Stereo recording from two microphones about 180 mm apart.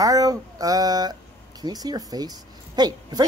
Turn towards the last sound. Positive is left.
turn(degrees=-20)  # may be behind; listen again after turning